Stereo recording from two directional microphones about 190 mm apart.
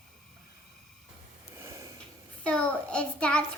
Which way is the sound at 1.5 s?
15° right (ahead or behind).